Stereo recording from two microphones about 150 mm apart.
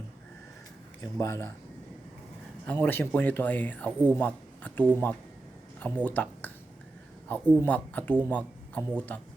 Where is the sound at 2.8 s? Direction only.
15° left (ahead or behind).